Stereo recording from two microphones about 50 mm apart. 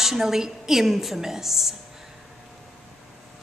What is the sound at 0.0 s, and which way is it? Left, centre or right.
A woman's voice, centre.